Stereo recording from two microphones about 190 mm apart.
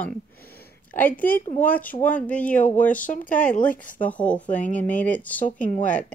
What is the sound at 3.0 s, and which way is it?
Speech, 45° left (ahead or behind).